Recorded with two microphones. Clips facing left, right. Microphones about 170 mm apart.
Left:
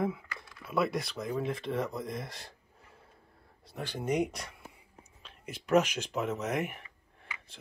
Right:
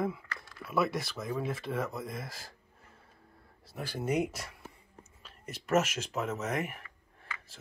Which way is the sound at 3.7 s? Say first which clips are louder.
Even; 5° right (ahead or behind).